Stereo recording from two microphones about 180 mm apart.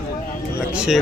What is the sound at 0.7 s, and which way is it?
Speech, 5° right (ahead or behind).